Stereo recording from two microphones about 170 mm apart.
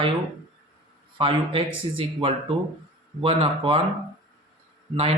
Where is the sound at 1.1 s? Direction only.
30° right (ahead or behind).